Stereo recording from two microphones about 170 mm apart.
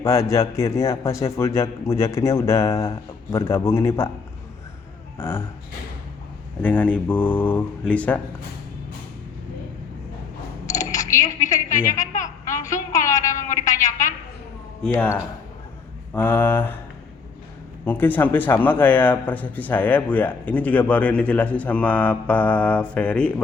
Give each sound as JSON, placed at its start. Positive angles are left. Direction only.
{"t": 0.0, "sound": "a man's voice", "side_deg": 20}
{"t": 5.1, "sound": "speech", "side_deg": 15}
{"t": 6.6, "sound": "a man's voice", "side_deg": 10}
{"t": 10.7, "sound": "a sound", "side_deg": 20}
{"t": 11.8, "sound": "a man's voice", "side_deg": 15}
{"t": 12.5, "sound": "a sound", "side_deg": 20}
{"t": 16.1, "sound": "a man's voice", "side_deg": 10}
{"t": 17.8, "sound": "a man's voice", "side_deg": 10}